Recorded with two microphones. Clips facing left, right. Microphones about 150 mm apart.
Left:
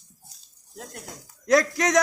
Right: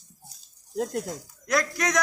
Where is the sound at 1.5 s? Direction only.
35° left (ahead or behind).